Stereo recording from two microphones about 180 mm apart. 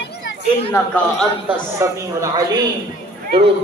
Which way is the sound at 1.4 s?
15° right (ahead or behind).